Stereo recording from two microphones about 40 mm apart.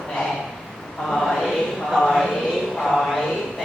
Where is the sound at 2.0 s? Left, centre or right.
Centre.